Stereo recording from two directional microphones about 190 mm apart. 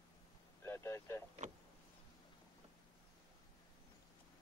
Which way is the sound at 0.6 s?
15° left (ahead or behind).